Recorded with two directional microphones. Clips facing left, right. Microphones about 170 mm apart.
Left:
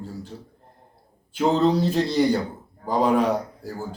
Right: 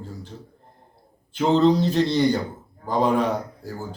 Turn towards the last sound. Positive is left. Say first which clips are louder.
# left 2 dB
turn(degrees=10)  # may be behind; listen again after turning